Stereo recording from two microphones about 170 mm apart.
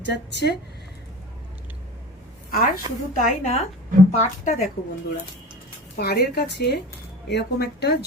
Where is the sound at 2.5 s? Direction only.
60° left (ahead or behind).